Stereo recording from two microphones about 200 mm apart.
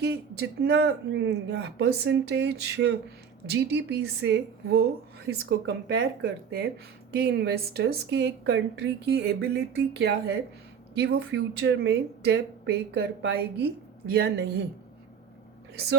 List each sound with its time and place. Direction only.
0.0 s a woman's voice: 55° right (ahead or behind)
15.7 s speech: 55° right (ahead or behind)